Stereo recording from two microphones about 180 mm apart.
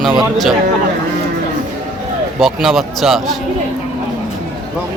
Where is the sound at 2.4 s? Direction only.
Centre (ahead or behind).